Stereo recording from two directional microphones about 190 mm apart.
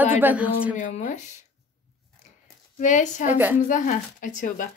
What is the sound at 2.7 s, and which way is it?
Speech, 40° left (ahead or behind).